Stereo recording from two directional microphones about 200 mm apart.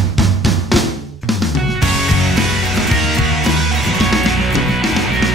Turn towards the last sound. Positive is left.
turn(degrees=0)  # may be behind; listen again after turning